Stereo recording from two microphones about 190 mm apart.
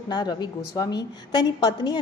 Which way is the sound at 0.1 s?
20° left (ahead or behind).